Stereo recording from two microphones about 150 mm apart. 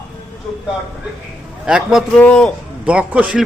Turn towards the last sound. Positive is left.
turn(degrees=-5)  # may be behind; listen again after turning